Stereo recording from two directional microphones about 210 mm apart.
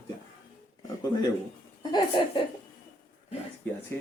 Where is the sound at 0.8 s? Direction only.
20° left (ahead or behind).